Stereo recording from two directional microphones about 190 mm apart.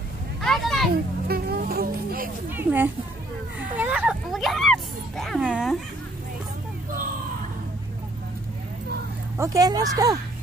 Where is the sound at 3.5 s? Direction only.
5° right (ahead or behind).